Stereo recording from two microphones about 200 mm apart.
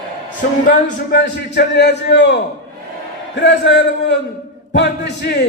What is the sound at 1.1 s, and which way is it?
Speech, 55° left (ahead or behind).